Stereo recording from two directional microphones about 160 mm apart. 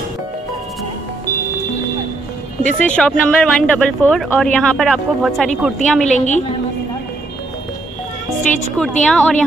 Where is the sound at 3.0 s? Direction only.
5° left (ahead or behind).